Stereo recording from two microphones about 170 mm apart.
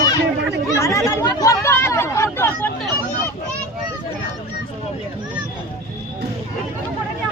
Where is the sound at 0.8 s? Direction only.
15° left (ahead or behind).